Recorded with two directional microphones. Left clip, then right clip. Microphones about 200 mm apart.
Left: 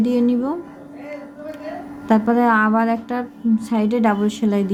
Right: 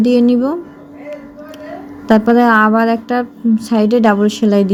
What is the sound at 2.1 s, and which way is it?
Speech, 20° right (ahead or behind).